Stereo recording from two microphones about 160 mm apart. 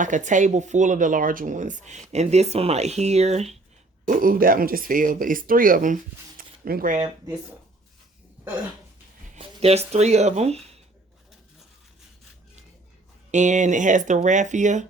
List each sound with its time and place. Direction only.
0.0 s speech: 50° right (ahead or behind)
4.0 s speech: 60° right (ahead or behind)
9.3 s speech: 40° right (ahead or behind)
13.3 s speech: 50° right (ahead or behind)